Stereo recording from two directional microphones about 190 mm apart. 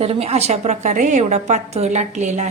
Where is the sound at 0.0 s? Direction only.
35° right (ahead or behind).